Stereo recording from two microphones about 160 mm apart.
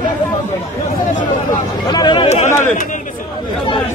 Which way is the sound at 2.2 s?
45° left (ahead or behind).